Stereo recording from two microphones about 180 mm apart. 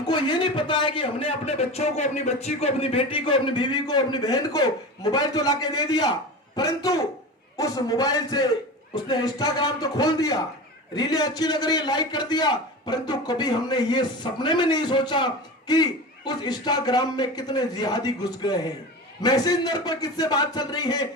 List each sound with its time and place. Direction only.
0.1 s a man's voice: 25° left (ahead or behind)